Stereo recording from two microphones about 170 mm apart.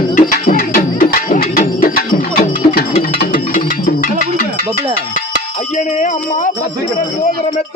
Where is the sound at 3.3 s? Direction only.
55° left (ahead or behind).